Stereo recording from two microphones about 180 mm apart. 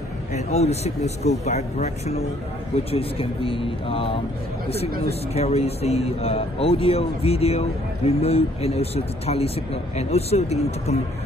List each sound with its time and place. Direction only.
0.3 s a man's voice: 35° left (ahead or behind)
5.3 s a man's voice: 35° left (ahead or behind)